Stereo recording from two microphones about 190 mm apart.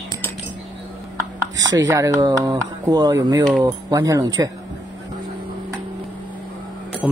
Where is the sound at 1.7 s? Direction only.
15° right (ahead or behind).